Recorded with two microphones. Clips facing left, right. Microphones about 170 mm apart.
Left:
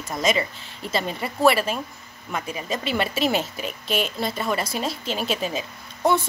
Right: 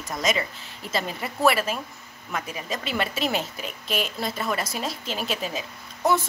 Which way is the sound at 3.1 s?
Centre (ahead or behind).